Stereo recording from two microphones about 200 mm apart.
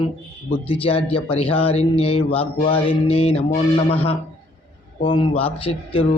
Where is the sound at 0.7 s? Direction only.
30° left (ahead or behind).